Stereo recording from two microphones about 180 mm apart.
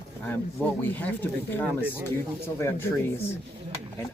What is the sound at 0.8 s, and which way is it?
Speech, 10° left (ahead or behind).